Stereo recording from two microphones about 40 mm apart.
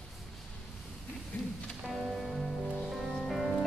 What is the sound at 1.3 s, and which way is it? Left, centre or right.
Music, left.